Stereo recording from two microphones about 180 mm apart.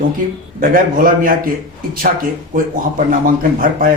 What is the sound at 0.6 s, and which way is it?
Speech, 50° right (ahead or behind).